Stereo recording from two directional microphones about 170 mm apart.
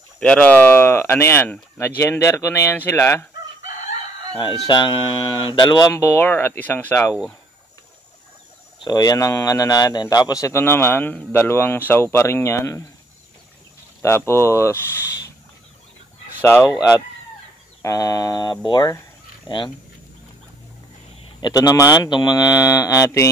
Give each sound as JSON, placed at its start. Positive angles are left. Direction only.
{"t": 0.2, "sound": "a man's voice", "side_deg": 5}
{"t": 4.4, "sound": "a man's voice", "side_deg": 30}
{"t": 8.8, "sound": "a man's voice", "side_deg": 25}
{"t": 14.0, "sound": "a man's voice", "side_deg": 15}
{"t": 16.3, "sound": "speech", "side_deg": 10}
{"t": 17.8, "sound": "speech", "side_deg": 20}
{"t": 21.4, "sound": "speech", "side_deg": 25}